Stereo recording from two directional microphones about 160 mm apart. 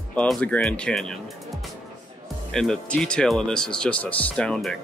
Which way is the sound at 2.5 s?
5° left (ahead or behind).